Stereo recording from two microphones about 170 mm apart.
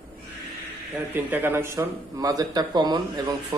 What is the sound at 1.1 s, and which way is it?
Speech, 10° right (ahead or behind).